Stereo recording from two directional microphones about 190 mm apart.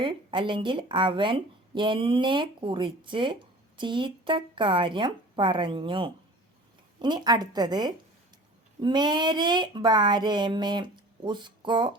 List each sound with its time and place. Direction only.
0.0 s speech: 25° right (ahead or behind)